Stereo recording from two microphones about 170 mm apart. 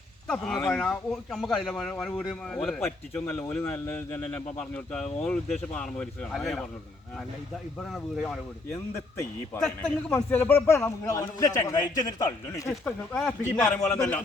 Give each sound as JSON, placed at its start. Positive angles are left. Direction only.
{"t": 0.3, "sound": "speech", "side_deg": 5}
{"t": 7.8, "sound": "speech", "side_deg": 5}
{"t": 9.6, "sound": "a man's voice", "side_deg": 5}
{"t": 12.8, "sound": "speech", "side_deg": 5}